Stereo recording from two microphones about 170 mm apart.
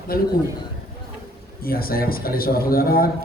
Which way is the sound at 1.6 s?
60° left (ahead or behind).